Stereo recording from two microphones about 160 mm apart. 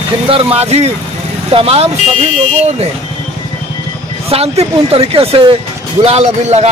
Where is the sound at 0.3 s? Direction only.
35° right (ahead or behind).